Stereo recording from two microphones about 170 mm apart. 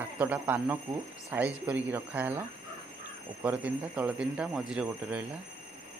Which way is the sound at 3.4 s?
10° right (ahead or behind).